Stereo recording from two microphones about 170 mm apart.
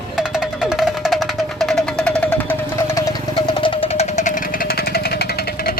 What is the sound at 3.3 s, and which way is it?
Music, 30° left (ahead or behind).